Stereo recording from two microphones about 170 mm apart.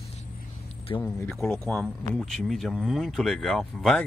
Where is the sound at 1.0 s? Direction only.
10° left (ahead or behind).